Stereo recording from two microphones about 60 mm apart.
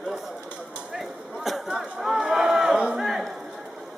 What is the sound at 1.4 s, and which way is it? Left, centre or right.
Chatter, centre.